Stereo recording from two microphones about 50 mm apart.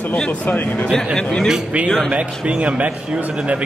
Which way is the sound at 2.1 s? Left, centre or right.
Right.